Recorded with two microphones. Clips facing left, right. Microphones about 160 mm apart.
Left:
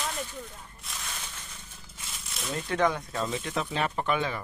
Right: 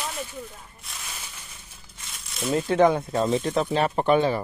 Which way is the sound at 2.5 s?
30° right (ahead or behind).